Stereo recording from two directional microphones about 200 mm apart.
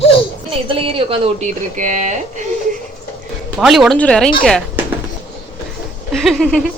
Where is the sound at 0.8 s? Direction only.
25° right (ahead or behind).